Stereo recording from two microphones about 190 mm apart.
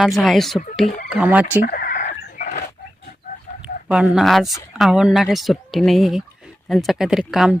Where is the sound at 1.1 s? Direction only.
5° right (ahead or behind).